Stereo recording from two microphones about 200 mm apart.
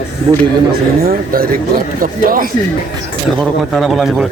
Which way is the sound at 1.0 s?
45° right (ahead or behind).